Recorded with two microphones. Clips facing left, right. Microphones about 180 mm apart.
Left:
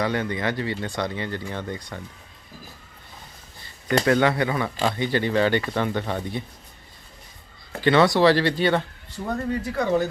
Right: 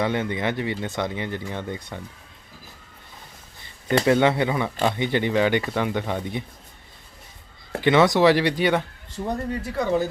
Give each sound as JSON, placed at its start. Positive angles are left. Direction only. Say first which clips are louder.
{"t": 0.0, "sound": "speech", "louder": "right 1 dB", "side_deg": -20}
{"t": 4.0, "sound": "speech", "louder": "right 2 dB", "side_deg": -20}
{"t": 7.8, "sound": "speech", "louder": "even", "side_deg": -15}
{"t": 9.7, "sound": "speech", "louder": "even", "side_deg": 0}